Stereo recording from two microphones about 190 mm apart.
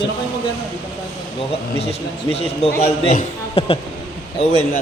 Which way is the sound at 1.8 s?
30° left (ahead or behind).